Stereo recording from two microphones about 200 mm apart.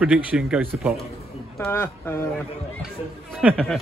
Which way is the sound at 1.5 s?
10° left (ahead or behind).